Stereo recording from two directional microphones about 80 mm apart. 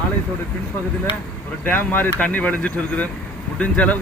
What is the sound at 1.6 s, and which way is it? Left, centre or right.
Speech, left.